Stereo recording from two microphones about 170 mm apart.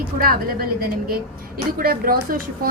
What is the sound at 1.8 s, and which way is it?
Speech, 60° right (ahead or behind).